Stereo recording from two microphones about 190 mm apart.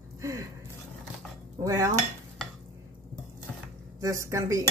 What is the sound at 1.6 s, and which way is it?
Dishes, 15° right (ahead or behind).